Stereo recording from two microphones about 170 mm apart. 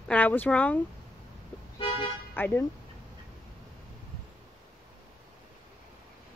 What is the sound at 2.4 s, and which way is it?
Speech, 10° left (ahead or behind).